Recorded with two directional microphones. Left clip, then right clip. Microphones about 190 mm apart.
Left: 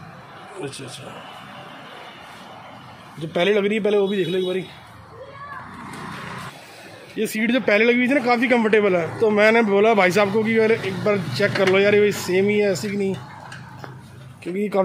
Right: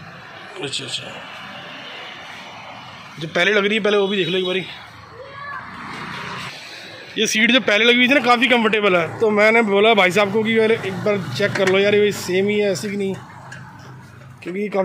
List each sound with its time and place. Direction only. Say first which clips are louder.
0.6 s a man's voice: right 8 dB; 10° left (ahead or behind)
3.2 s a man's voice: right 2 dB; 10° left (ahead or behind)
7.2 s speech: right 6 dB; 5° left (ahead or behind)
14.4 s a man's voice: even; 10° left (ahead or behind)